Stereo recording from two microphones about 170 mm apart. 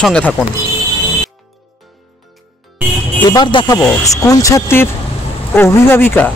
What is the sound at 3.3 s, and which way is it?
Speech, 25° left (ahead or behind).